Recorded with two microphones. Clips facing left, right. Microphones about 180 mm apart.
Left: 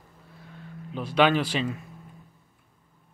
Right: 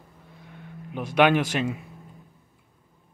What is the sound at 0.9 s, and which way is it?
Speech, 15° right (ahead or behind).